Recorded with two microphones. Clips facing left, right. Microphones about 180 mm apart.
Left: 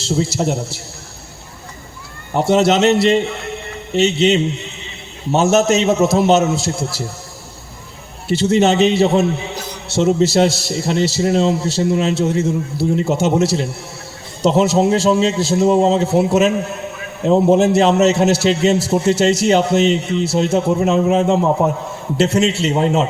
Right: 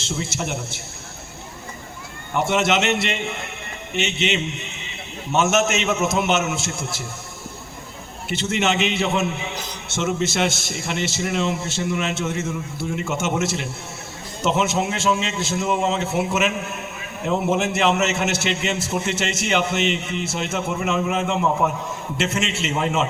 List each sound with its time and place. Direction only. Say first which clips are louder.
0.0 s a man's voice: left 9 dB; 35° left (ahead or behind)
2.3 s a man's voice: left 6 dB; 35° left (ahead or behind)
8.3 s a man's voice: left 9 dB; 35° left (ahead or behind)